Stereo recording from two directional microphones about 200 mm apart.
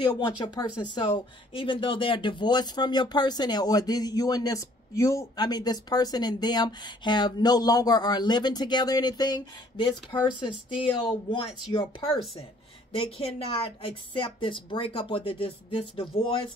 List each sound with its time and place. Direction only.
0.0 s speech: 20° left (ahead or behind)
12.9 s speech: 30° left (ahead or behind)